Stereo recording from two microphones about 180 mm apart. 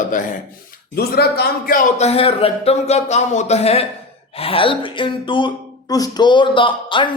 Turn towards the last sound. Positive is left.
turn(degrees=25)  # may be behind; listen again after turning